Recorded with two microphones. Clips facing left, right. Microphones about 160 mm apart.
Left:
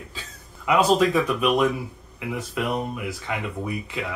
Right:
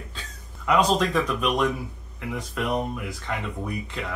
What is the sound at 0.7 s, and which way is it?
Speech, 5° left (ahead or behind).